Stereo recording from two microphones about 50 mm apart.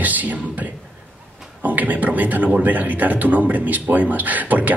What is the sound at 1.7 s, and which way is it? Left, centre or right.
Speech, right.